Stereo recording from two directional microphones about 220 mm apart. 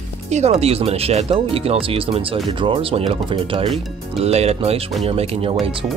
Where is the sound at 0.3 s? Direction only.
30° right (ahead or behind).